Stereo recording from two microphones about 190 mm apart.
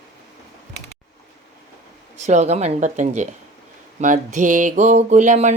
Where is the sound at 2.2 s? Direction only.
35° right (ahead or behind).